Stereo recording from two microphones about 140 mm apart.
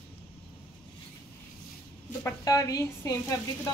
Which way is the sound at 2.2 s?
20° left (ahead or behind).